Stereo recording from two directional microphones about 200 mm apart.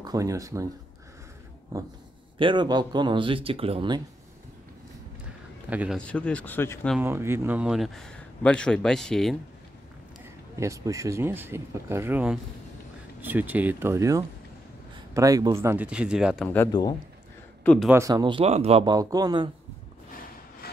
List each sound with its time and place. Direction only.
0.0 s speech: 15° right (ahead or behind)
2.3 s speech: 25° right (ahead or behind)
5.7 s speech: 5° right (ahead or behind)
5.9 s speech: 5° left (ahead or behind)
7.0 s a man's voice: 10° right (ahead or behind)
10.6 s speech: 15° right (ahead or behind)
17.6 s a man's voice: centre (ahead or behind)
17.9 s speech: 20° right (ahead or behind)
18.9 s speech: 20° right (ahead or behind)
20.6 s wood: 50° left (ahead or behind)